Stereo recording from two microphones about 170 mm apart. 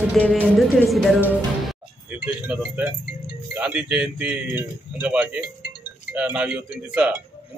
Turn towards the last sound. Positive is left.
turn(degrees=-5)  # may be behind; listen again after turning